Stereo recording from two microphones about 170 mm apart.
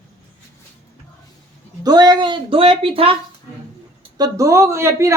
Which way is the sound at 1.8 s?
25° right (ahead or behind).